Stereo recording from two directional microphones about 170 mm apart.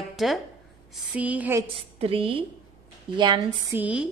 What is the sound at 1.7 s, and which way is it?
A woman's voice, 35° right (ahead or behind).